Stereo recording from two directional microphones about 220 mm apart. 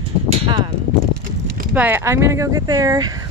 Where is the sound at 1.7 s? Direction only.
10° right (ahead or behind).